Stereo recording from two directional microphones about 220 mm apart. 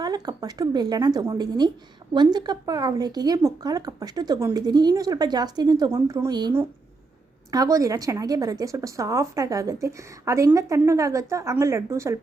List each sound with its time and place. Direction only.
0.0 s speech: 15° right (ahead or behind)